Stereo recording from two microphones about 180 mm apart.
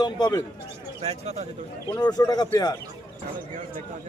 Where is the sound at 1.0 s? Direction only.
35° right (ahead or behind).